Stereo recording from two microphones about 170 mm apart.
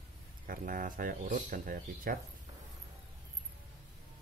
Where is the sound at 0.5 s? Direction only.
55° right (ahead or behind).